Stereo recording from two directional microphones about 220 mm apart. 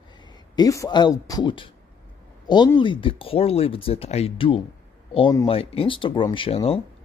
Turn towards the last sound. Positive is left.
turn(degrees=25)  # may be behind; listen again after turning